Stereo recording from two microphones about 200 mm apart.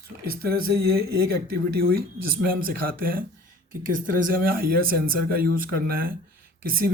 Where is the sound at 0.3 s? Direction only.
50° right (ahead or behind).